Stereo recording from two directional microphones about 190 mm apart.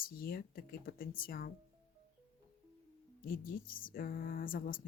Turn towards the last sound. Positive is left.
turn(degrees=45)  # may be behind; listen again after turning